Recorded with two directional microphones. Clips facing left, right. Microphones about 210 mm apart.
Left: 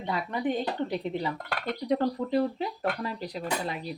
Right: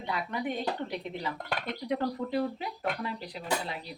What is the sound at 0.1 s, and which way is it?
Speech, 35° left (ahead or behind).